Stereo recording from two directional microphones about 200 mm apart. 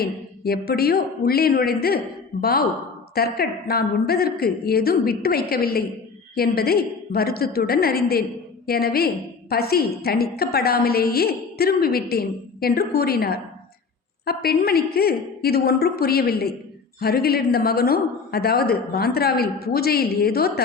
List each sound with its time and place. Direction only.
0.0 s a woman's voice: 50° left (ahead or behind)